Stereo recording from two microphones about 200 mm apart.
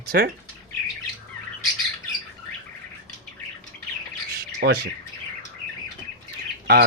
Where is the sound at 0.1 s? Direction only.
50° right (ahead or behind).